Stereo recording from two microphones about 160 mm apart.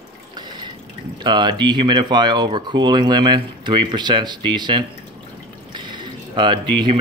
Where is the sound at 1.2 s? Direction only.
30° right (ahead or behind).